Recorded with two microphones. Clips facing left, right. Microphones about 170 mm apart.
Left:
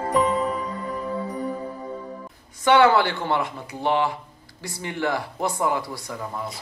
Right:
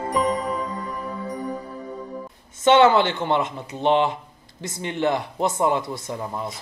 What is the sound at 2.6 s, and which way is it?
A man's voice, 20° right (ahead or behind).